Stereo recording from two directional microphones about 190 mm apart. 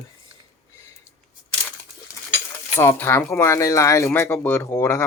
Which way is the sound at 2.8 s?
10° left (ahead or behind).